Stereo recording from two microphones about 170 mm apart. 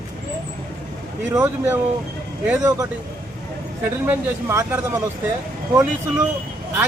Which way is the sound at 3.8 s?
15° right (ahead or behind).